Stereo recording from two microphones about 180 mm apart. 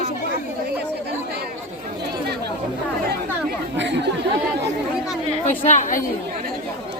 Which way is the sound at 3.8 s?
75° right (ahead or behind).